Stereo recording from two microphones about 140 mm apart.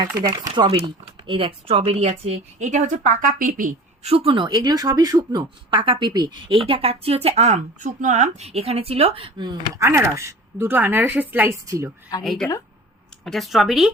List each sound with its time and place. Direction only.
0.2 s speech: 30° right (ahead or behind); by 3.8 s 75° right (ahead or behind)
4.0 s speech: 45° right (ahead or behind)
9.8 s a woman's voice: 20° right (ahead or behind)
12.2 s speech: centre (ahead or behind)